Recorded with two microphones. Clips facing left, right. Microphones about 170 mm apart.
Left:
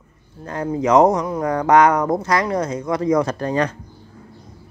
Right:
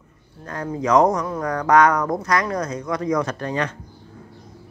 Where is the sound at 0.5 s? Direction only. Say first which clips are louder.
Left 3 dB; 25° left (ahead or behind).